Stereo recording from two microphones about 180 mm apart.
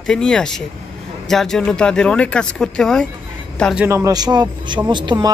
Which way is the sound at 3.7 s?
10° right (ahead or behind).